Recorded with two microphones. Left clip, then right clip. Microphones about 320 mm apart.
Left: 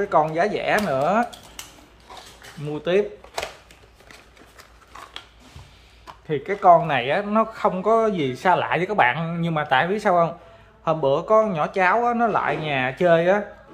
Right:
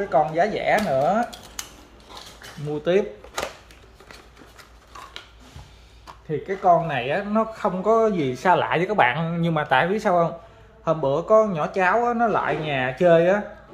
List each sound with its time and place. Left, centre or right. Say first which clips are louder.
0.1 s speech: right 1 dB; centre
2.7 s speech: even; centre
6.2 s speech: left 3 dB; centre